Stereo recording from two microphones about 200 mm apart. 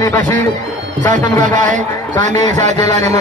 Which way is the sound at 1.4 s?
40° right (ahead or behind).